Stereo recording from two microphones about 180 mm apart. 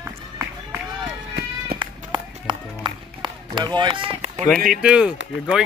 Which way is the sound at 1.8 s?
25° right (ahead or behind).